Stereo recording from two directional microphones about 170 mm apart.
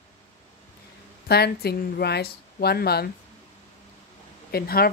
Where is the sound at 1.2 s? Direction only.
70° left (ahead or behind).